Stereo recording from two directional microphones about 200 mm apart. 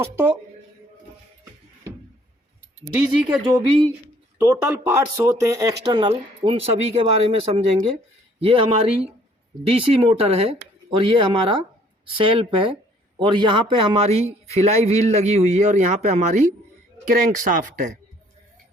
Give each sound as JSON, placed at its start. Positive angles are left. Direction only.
{"t": 0.0, "sound": "speech", "side_deg": -10}
{"t": 4.4, "sound": "a man's voice", "side_deg": -10}